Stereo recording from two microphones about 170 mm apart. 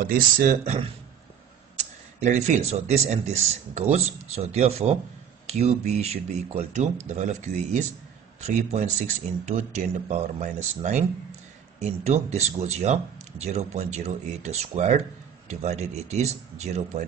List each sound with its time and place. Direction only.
0.0 s speech: 55° right (ahead or behind)
1.8 s speech: 40° right (ahead or behind)